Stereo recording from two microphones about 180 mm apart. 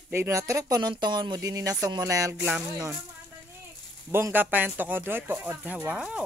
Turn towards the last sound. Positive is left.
turn(degrees=-5)  # may be behind; listen again after turning